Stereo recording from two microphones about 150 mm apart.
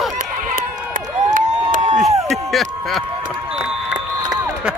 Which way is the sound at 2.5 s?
Centre (ahead or behind).